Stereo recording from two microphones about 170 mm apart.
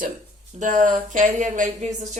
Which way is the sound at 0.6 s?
50° right (ahead or behind).